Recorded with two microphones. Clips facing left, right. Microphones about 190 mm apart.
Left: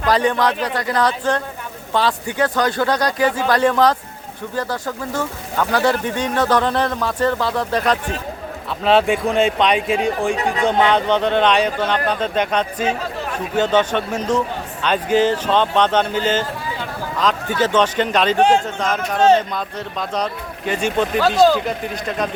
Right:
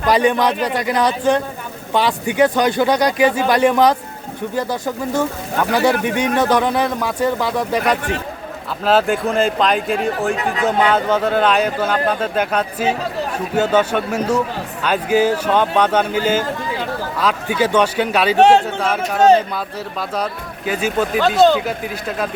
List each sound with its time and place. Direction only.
0.0 s speech: 15° right (ahead or behind)
18.3 s a man's voice: 70° right (ahead or behind)
18.8 s speech: 10° right (ahead or behind)